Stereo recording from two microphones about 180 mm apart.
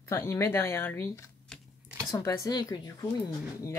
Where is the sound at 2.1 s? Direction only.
15° left (ahead or behind).